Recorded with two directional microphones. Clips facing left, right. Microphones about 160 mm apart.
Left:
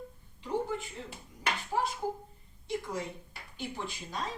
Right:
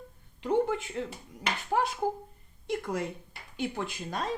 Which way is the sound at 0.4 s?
70° right (ahead or behind).